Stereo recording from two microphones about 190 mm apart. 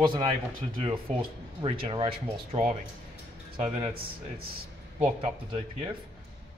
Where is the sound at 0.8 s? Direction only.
30° right (ahead or behind).